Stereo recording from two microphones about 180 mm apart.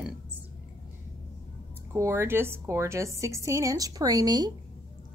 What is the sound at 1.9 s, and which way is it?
Speech, 15° right (ahead or behind).